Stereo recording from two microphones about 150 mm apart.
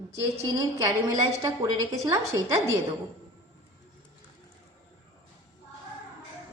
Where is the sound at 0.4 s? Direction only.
25° right (ahead or behind).